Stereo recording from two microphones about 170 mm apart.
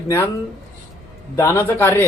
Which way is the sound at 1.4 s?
15° left (ahead or behind).